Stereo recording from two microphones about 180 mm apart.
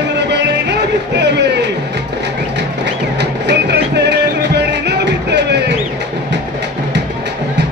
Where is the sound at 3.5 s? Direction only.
70° right (ahead or behind).